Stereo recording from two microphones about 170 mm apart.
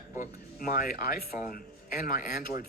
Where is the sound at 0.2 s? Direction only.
55° left (ahead or behind).